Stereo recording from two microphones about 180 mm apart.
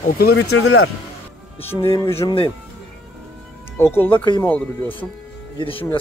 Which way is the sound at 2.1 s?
30° left (ahead or behind).